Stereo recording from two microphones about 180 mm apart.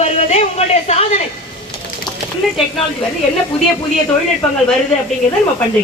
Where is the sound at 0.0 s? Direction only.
35° left (ahead or behind).